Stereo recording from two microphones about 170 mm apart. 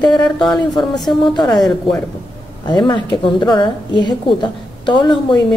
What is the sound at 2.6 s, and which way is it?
A woman's voice, 25° left (ahead or behind).